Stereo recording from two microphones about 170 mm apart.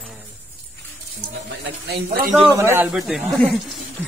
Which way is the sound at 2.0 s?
45° right (ahead or behind).